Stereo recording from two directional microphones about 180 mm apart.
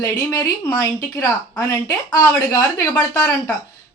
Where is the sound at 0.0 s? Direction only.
20° left (ahead or behind).